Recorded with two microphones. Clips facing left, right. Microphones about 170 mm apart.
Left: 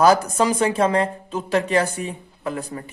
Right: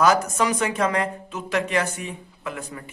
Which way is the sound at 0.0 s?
30° left (ahead or behind).